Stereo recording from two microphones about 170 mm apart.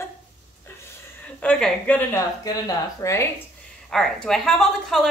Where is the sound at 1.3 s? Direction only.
5° left (ahead or behind).